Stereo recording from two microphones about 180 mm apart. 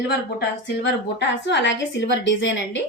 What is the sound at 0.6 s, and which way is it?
A woman's voice, 75° left (ahead or behind).